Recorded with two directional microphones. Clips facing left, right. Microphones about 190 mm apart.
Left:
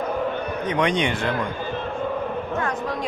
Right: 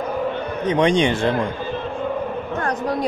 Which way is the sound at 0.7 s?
25° right (ahead or behind).